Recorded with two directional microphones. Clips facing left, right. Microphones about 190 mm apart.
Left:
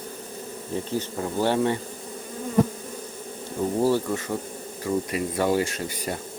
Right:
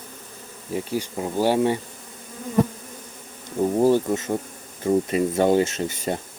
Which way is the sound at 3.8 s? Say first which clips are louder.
Right 4 dB; 20° right (ahead or behind).